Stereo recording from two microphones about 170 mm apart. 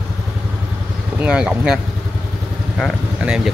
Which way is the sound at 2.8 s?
5° right (ahead or behind).